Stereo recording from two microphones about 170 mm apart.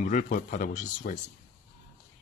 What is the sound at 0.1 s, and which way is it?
Speech, 50° left (ahead or behind).